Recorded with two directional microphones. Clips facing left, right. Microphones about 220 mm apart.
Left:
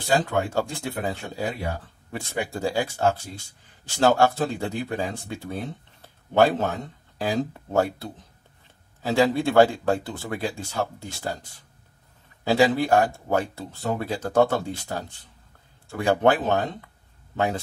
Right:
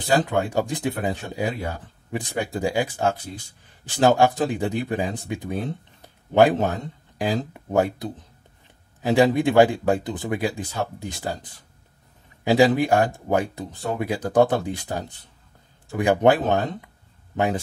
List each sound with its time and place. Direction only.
0.3 s speech: 15° right (ahead or behind)
6.0 s a sound: 15° right (ahead or behind)
7.2 s speech: 15° right (ahead or behind)